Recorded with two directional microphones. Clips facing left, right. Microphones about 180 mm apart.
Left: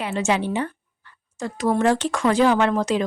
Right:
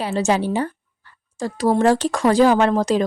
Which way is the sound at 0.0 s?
35° right (ahead or behind).